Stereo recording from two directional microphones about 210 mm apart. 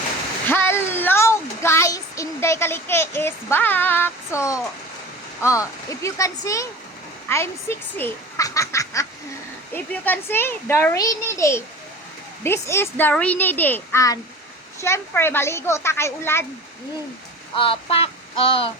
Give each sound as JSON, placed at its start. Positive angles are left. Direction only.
{"t": 0.4, "sound": "a sound", "side_deg": 10}
{"t": 5.4, "sound": "a child's voice", "side_deg": 15}
{"t": 17.5, "sound": "child singing", "side_deg": 25}